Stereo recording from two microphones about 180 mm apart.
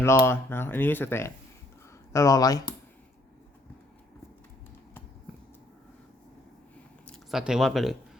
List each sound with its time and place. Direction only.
0.0 s speech: 15° left (ahead or behind)
7.1 s speech: centre (ahead or behind)